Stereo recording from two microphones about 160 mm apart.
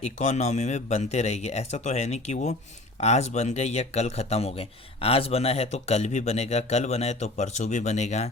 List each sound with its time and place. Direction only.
0.0 s speech: 45° left (ahead or behind)